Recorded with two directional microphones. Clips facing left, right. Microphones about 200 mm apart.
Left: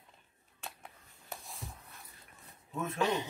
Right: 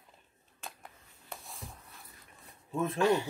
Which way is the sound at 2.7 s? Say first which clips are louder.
Right 5 dB; 30° right (ahead or behind).